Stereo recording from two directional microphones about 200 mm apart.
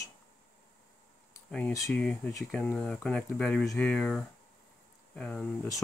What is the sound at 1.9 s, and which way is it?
Speech, 5° left (ahead or behind).